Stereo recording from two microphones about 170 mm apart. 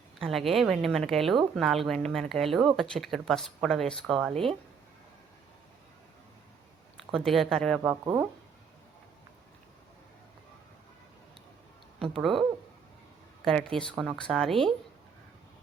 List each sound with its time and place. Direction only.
0.2 s speech: centre (ahead or behind)
6.9 s speech: centre (ahead or behind)
8.0 s speech: 20° right (ahead or behind)
11.9 s speech: 30° right (ahead or behind)
12.2 s speech: centre (ahead or behind)